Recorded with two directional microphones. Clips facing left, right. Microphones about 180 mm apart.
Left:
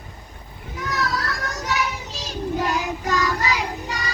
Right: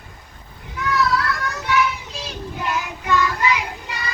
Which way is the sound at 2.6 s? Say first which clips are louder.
Right 2 dB; 40° left (ahead or behind).